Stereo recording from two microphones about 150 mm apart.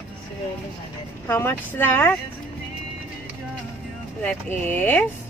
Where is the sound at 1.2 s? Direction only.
15° left (ahead or behind).